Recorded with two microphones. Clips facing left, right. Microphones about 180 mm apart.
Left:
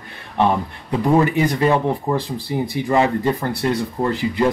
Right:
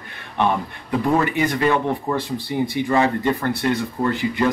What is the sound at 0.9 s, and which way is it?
Speech, 20° left (ahead or behind).